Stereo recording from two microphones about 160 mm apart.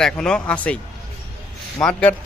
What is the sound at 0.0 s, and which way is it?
Speech, 5° left (ahead or behind).